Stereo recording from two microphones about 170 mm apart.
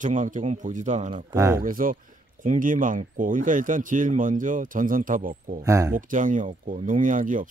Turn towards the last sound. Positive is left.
turn(degrees=-50)  # may be behind; listen again after turning